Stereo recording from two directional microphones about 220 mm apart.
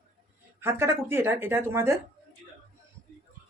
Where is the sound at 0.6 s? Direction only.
10° right (ahead or behind).